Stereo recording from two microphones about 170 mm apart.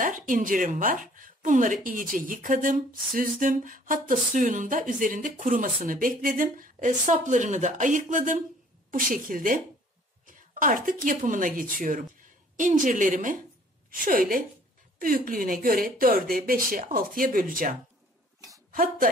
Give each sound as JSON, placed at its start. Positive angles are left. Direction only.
{"t": 0.3, "sound": "a woman's voice", "side_deg": -50}